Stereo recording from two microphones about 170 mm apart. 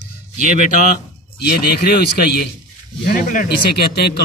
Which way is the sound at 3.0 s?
55° left (ahead or behind).